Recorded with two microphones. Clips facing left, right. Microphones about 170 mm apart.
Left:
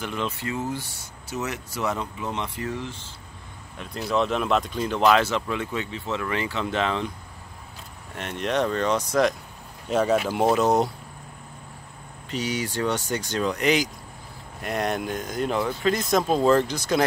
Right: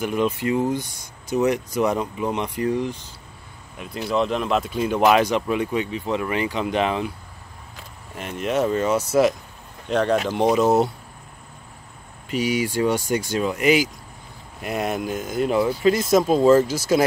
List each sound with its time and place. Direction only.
0.0 s speech: 10° right (ahead or behind)
8.1 s speech: 5° right (ahead or behind)
9.8 s speech: 5° left (ahead or behind)
12.3 s speech: 10° right (ahead or behind)